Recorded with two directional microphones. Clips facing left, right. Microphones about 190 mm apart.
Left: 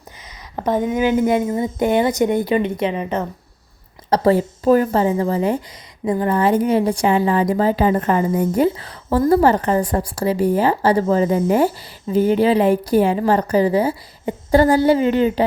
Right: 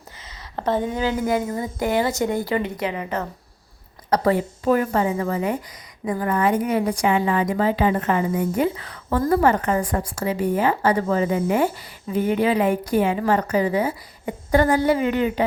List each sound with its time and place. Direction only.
0.5 s a woman's voice: 15° left (ahead or behind); by 15.4 s 30° left (ahead or behind)